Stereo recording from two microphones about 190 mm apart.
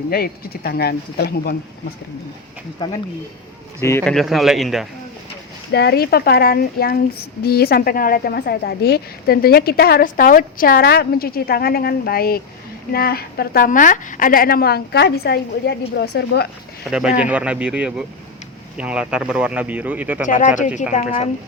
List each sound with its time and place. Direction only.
0.1 s speech: 55° left (ahead or behind)
2.8 s speech: 20° left (ahead or behind)
4.1 s speech: centre (ahead or behind)
5.7 s a woman's voice: 60° left (ahead or behind)
16.9 s speech: 5° right (ahead or behind)
20.2 s speech: 40° left (ahead or behind)